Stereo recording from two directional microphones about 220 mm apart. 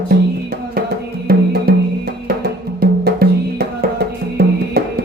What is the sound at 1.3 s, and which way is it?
Music, 40° right (ahead or behind).